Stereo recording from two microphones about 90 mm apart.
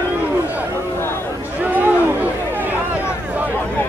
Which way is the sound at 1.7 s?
20° right (ahead or behind).